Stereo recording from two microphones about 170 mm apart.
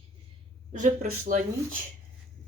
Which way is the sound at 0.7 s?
45° right (ahead or behind).